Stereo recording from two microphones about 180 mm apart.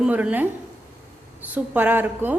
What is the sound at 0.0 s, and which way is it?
Speech, 10° right (ahead or behind).